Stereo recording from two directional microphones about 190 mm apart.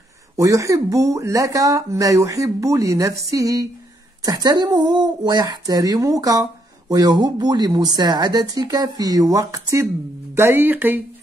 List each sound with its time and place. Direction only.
0.4 s speech: 15° right (ahead or behind)